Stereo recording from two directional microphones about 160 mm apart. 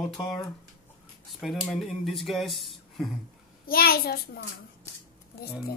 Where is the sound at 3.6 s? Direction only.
70° left (ahead or behind).